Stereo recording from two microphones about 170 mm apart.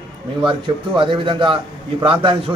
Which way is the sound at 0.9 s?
30° right (ahead or behind).